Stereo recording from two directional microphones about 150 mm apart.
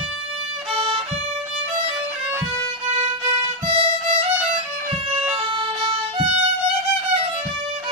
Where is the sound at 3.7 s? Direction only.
40° right (ahead or behind).